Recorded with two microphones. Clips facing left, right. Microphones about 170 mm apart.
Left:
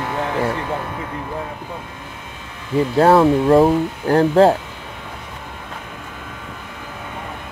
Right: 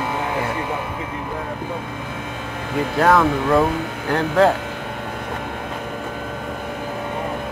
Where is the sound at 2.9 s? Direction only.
30° left (ahead or behind).